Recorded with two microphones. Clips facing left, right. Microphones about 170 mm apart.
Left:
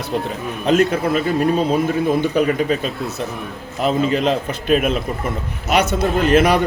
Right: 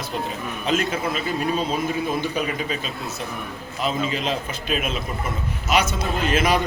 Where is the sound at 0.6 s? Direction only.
55° left (ahead or behind).